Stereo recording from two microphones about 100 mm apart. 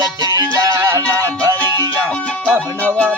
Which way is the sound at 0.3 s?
35° right (ahead or behind).